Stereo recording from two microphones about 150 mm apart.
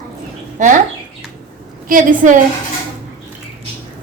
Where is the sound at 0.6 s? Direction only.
55° right (ahead or behind).